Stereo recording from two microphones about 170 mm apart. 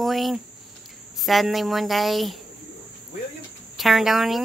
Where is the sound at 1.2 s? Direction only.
Centre (ahead or behind).